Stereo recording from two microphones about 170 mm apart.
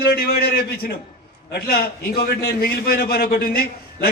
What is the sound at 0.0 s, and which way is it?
A man's voice, 65° left (ahead or behind).